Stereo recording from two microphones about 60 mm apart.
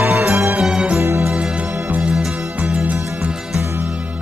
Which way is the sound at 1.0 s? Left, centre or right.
Right.